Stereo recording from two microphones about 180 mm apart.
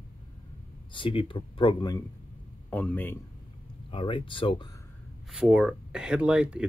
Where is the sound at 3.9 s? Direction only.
25° left (ahead or behind).